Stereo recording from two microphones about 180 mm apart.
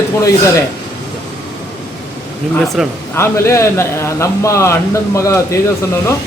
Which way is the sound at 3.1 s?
15° left (ahead or behind).